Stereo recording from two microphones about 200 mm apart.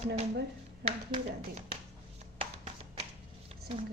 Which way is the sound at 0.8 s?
35° right (ahead or behind).